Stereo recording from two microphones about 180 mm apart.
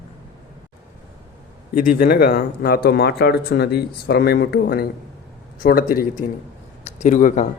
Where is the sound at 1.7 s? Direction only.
55° left (ahead or behind).